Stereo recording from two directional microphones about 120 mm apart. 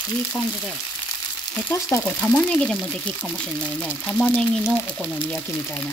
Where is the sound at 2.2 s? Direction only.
10° left (ahead or behind).